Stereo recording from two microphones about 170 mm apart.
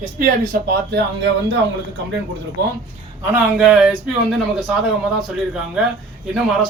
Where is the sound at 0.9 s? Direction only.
85° right.